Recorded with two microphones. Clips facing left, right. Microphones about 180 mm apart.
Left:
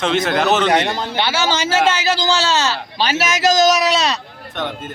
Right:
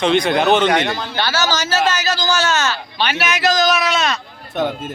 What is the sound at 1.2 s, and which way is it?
Speech, 25° left (ahead or behind).